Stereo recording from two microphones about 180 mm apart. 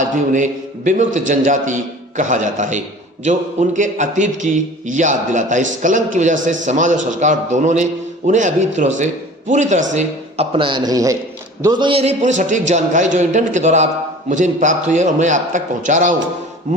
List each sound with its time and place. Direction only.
0.0 s a man's voice: 45° right (ahead or behind)
16.7 s music: 40° right (ahead or behind)